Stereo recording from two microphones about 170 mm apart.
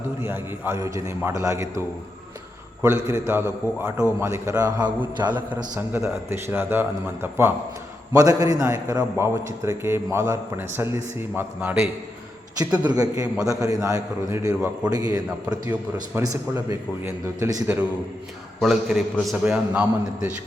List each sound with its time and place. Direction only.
0.2 s speech: 10° right (ahead or behind)
2.8 s a man's voice: 15° right (ahead or behind)
12.9 s a man's voice: 20° right (ahead or behind)
18.6 s a man's voice: 5° right (ahead or behind)